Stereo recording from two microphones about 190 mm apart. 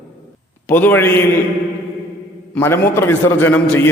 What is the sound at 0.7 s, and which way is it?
Speech, 10° left (ahead or behind).